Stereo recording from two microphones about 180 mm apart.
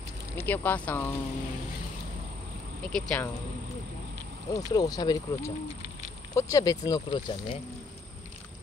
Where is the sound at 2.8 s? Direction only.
5° left (ahead or behind).